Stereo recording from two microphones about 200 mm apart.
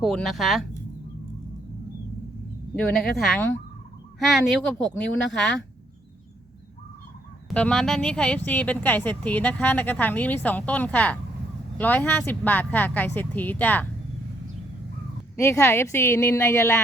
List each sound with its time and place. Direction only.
0.0 s speech: centre (ahead or behind)
2.7 s speech: 5° left (ahead or behind)
7.5 s speech: 5° left (ahead or behind)
15.4 s speech: 15° left (ahead or behind)